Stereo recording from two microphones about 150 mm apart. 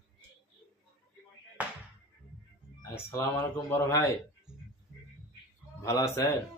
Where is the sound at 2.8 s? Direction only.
15° left (ahead or behind).